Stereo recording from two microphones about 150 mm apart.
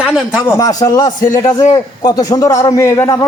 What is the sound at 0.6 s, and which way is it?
A man's voice, 25° left (ahead or behind).